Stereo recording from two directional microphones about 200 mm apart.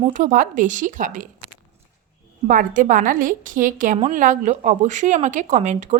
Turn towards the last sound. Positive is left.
turn(degrees=-35)  # may be behind; listen again after turning